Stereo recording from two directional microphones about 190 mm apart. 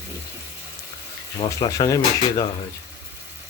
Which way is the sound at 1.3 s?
25° left (ahead or behind).